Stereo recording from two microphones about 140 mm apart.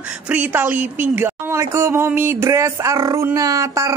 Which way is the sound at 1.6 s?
20° right (ahead or behind).